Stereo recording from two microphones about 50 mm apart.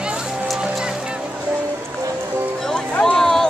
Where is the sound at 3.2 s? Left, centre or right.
Centre.